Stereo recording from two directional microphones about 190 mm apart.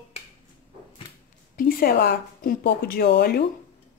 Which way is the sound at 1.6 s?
50° left (ahead or behind).